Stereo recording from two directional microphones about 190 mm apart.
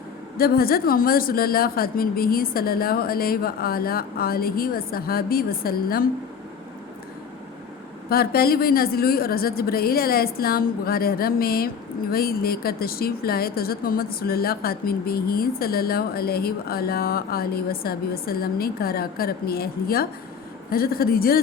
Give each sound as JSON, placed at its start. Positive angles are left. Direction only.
{"t": 0.3, "sound": "a woman's voice", "side_deg": 55}
{"t": 8.1, "sound": "a woman's voice", "side_deg": 55}